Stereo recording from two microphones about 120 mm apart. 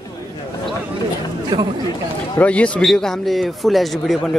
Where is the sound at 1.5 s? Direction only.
35° right (ahead or behind).